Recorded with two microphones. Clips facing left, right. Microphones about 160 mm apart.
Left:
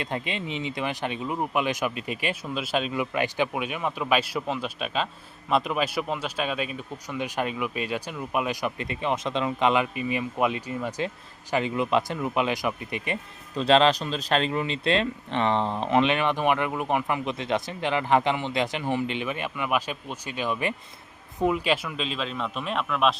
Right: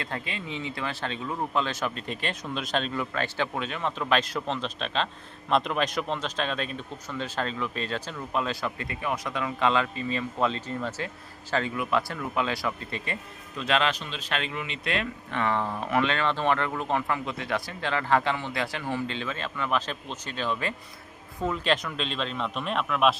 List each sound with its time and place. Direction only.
0.0 s a man's voice: 20° left (ahead or behind)
13.6 s a man's voice: 30° left (ahead or behind); by 23.1 s centre (ahead or behind)